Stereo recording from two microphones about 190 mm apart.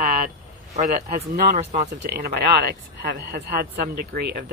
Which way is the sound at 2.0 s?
55° right (ahead or behind).